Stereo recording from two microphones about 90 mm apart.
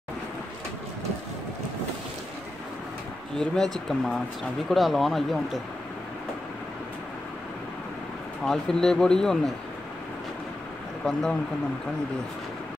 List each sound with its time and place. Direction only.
3.3 s speech: 5° left (ahead or behind)
8.5 s speech: 5° left (ahead or behind)
11.0 s speech: 5° left (ahead or behind)